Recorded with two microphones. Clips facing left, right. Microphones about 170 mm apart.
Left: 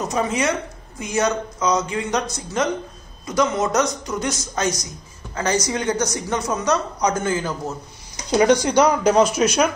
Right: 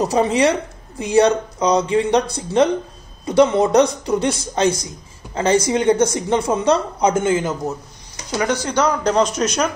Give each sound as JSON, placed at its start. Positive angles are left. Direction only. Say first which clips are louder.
{"t": 0.0, "sound": "a woman's voice", "louder": "right 6 dB", "side_deg": -35}
{"t": 8.3, "sound": "speech", "louder": "left 5 dB", "side_deg": 20}